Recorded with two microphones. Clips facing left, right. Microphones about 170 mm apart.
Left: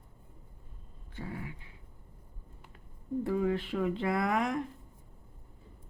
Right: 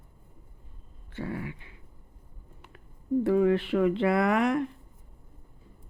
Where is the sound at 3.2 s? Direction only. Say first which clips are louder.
Right 7 dB; 75° right (ahead or behind).